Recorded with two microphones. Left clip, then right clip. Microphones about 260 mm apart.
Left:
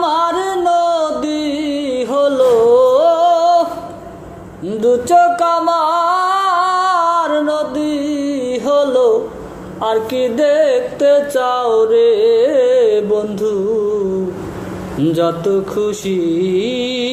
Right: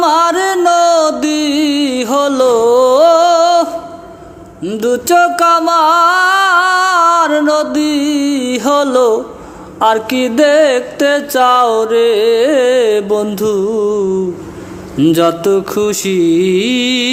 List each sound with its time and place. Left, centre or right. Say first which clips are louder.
0.0 s music: right 5 dB; right